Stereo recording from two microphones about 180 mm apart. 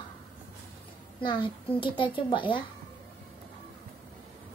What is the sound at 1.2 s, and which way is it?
A child's voice, 25° left (ahead or behind).